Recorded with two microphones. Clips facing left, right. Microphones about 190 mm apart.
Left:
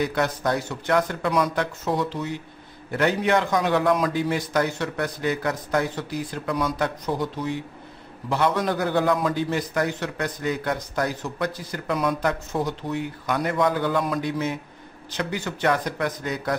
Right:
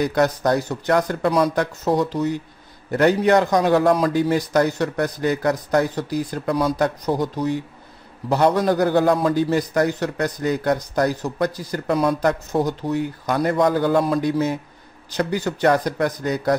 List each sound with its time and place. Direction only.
0.0 s a man's voice: 40° right (ahead or behind)